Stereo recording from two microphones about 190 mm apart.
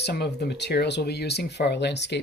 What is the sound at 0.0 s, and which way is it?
Speech, 60° left (ahead or behind).